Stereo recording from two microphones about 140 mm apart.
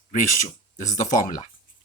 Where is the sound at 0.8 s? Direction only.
65° left (ahead or behind).